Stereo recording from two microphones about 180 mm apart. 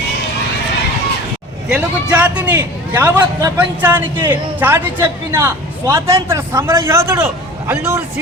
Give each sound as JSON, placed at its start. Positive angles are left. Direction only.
{"t": 1.7, "sound": "a man's voice", "side_deg": -10}
{"t": 4.2, "sound": "a man's voice", "side_deg": -25}
{"t": 4.6, "sound": "a man's voice", "side_deg": -15}